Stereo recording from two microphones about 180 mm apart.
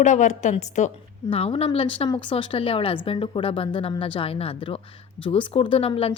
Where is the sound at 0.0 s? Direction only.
40° left (ahead or behind).